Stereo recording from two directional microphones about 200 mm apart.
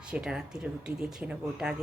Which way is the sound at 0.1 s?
5° right (ahead or behind).